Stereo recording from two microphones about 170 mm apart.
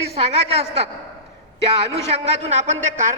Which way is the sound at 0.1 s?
35° right (ahead or behind).